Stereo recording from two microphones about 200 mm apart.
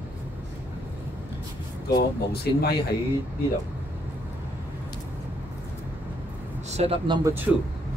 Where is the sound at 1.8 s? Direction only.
55° left (ahead or behind).